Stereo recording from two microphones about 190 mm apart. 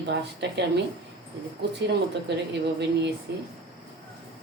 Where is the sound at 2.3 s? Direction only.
60° right (ahead or behind).